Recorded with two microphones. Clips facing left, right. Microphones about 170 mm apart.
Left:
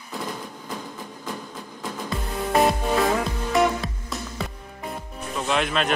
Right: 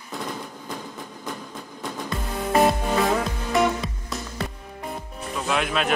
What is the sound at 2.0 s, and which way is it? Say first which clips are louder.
Music: even; centre (ahead or behind).